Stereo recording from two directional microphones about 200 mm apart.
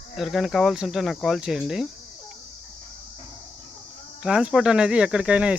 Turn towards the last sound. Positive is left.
turn(degrees=-5)  # may be behind; listen again after turning